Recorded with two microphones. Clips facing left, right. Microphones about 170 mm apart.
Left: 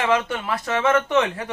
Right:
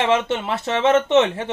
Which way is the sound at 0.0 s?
25° right (ahead or behind).